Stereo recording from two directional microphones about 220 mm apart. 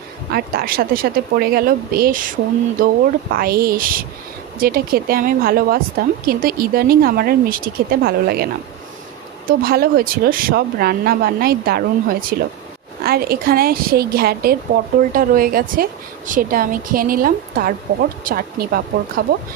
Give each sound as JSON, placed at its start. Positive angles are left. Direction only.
{"t": 0.3, "sound": "speech", "side_deg": -45}
{"t": 3.3, "sound": "speech", "side_deg": -45}
{"t": 9.5, "sound": "speech", "side_deg": -45}